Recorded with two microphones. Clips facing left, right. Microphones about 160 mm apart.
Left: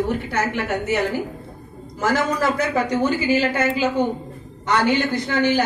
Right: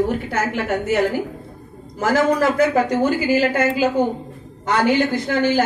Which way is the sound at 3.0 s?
45° right (ahead or behind).